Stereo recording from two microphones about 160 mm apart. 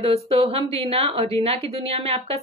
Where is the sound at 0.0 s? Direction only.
35° right (ahead or behind).